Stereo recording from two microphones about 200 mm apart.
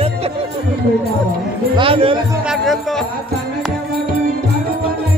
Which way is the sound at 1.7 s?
25° right (ahead or behind).